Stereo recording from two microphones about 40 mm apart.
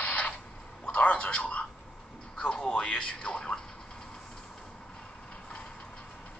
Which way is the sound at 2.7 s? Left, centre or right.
Left.